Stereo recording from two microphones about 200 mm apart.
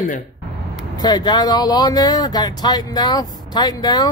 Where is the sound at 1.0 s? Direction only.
20° left (ahead or behind).